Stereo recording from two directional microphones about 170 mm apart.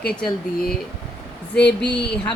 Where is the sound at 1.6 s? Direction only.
80° left.